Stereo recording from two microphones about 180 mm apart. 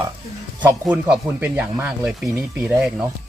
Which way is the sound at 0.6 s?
5° right (ahead or behind).